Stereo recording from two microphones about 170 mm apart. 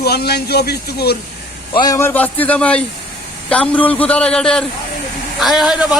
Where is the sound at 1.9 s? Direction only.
10° left (ahead or behind).